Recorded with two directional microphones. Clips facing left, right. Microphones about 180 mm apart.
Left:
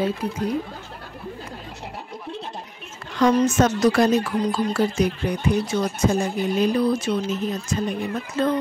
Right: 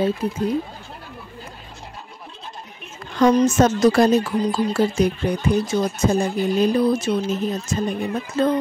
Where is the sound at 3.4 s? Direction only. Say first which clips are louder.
Right 3 dB; 30° right (ahead or behind).